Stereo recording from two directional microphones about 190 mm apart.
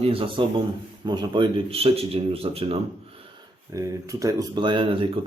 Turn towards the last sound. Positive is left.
turn(degrees=-25)  # may be behind; listen again after turning